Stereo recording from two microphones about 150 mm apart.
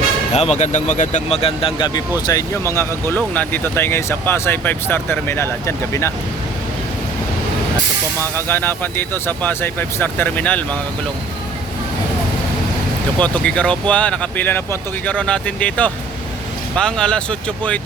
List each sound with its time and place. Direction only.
0.3 s speech: 45° left (ahead or behind); by 6.1 s 20° left (ahead or behind)
8.2 s speech: 15° left (ahead or behind)
13.1 s speech: 5° left (ahead or behind)